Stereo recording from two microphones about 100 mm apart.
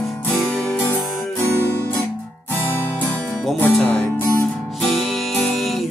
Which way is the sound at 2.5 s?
20° left (ahead or behind).